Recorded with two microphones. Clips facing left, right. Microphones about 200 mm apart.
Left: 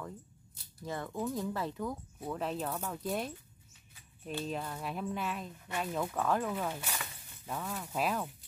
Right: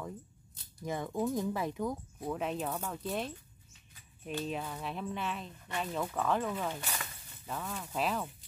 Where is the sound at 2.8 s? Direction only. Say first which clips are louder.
Left 1 dB; 5° left (ahead or behind).